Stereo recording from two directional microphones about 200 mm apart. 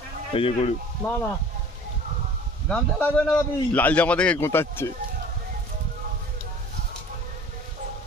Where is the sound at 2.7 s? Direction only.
5° left (ahead or behind).